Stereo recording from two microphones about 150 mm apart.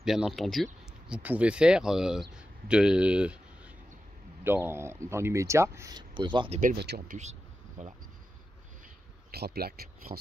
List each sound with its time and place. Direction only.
0.0 s speech: 5° right (ahead or behind); by 6.5 s 30° right (ahead or behind)
6.7 s speech: 90° right
7.8 s speech: 50° right (ahead or behind)
9.3 s speech: 90° right